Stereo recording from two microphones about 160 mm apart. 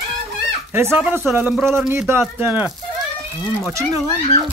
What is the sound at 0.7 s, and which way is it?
Speech, 15° right (ahead or behind).